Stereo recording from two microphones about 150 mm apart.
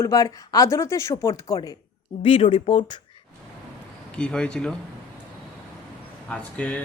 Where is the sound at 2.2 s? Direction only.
40° left (ahead or behind).